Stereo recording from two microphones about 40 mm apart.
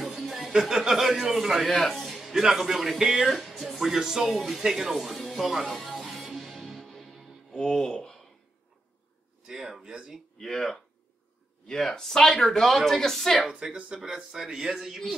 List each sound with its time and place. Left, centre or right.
0.0 s a sound: centre
0.5 s speech: centre
1.7 s speech: centre
3.3 s speech: centre
5.2 s music: centre
7.7 s speech: centre
9.5 s speech: centre
10.3 s speech: centre
13.5 s speech: right